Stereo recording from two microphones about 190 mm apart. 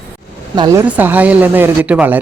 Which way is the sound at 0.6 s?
20° right (ahead or behind).